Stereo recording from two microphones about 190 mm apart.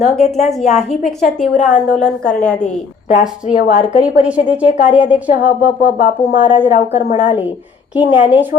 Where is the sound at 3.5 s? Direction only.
45° left (ahead or behind).